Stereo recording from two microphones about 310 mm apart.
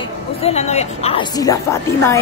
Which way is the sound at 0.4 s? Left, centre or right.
Centre.